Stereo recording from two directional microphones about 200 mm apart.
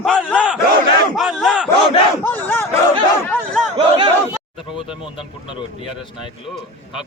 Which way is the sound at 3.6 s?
30° right (ahead or behind).